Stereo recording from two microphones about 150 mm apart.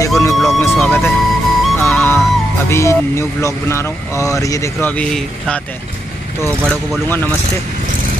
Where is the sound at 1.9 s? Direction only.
10° left (ahead or behind).